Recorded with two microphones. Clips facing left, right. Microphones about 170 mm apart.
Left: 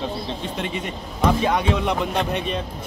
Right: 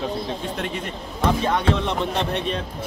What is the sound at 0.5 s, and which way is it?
Speech, centre (ahead or behind).